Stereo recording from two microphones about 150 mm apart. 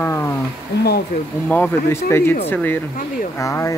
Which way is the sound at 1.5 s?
10° left (ahead or behind).